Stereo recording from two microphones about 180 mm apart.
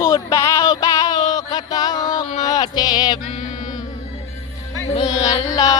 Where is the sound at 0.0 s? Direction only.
15° left (ahead or behind).